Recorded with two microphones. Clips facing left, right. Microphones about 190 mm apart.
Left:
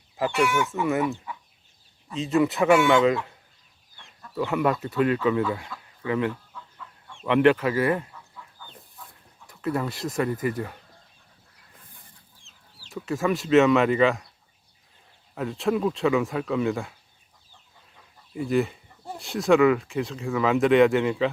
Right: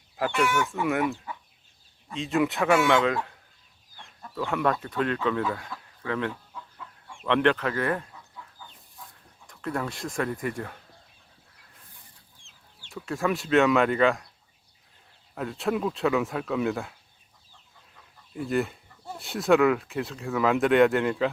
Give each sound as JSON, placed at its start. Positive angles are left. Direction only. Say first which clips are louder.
{"t": 0.7, "sound": "speech", "louder": "left 2 dB", "side_deg": 0}
{"t": 2.1, "sound": "speech", "louder": "left 3 dB", "side_deg": 0}
{"t": 4.4, "sound": "speech", "louder": "left 2 dB", "side_deg": 5}
{"t": 9.5, "sound": "speech", "louder": "left 4 dB", "side_deg": 5}
{"t": 12.9, "sound": "speech", "louder": "left 2 dB", "side_deg": 0}
{"t": 15.4, "sound": "speech", "louder": "left 3 dB", "side_deg": 0}
{"t": 18.3, "sound": "speech", "louder": "left 3 dB", "side_deg": 0}